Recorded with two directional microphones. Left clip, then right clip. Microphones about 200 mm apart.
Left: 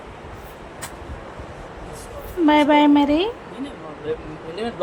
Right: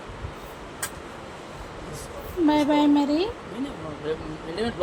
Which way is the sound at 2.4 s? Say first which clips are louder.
Left 6 dB; 10° left (ahead or behind).